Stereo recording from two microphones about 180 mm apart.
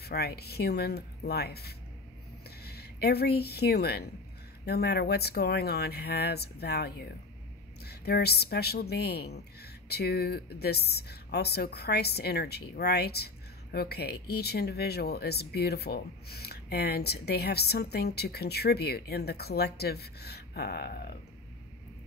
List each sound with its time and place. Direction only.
0.0 s speech: 60° left (ahead or behind)